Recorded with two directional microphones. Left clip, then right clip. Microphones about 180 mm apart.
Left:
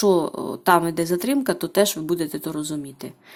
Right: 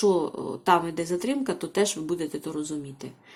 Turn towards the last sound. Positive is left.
turn(degrees=25)  # may be behind; listen again after turning